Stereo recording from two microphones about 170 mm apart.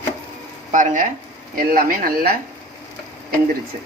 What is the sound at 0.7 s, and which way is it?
Speech, 50° right (ahead or behind).